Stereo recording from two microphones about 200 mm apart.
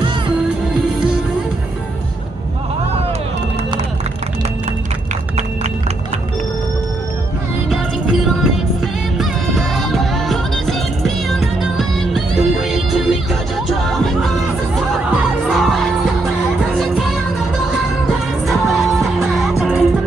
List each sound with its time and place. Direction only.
7.7 s music: centre (ahead or behind)
15.4 s music: centre (ahead or behind)
18.8 s music: centre (ahead or behind)